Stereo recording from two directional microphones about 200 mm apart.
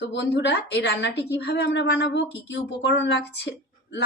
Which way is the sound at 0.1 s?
60° left (ahead or behind).